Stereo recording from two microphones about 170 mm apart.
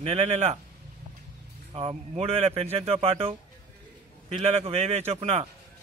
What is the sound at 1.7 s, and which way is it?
Speech, 35° right (ahead or behind).